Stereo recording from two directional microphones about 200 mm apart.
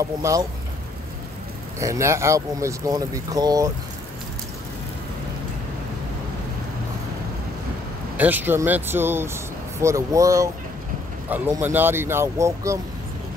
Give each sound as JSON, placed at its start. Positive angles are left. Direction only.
{"t": 0.0, "sound": "speech", "side_deg": -15}
{"t": 1.8, "sound": "speech", "side_deg": -15}
{"t": 8.2, "sound": "speech", "side_deg": -10}